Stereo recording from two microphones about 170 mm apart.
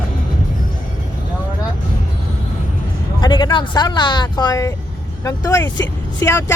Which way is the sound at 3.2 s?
25° left (ahead or behind).